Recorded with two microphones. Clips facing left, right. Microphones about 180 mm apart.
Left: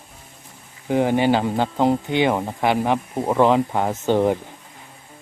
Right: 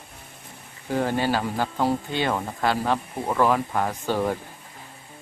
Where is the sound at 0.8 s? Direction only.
20° left (ahead or behind).